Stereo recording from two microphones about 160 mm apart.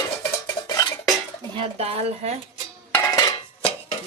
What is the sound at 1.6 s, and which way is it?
Speech, 40° right (ahead or behind).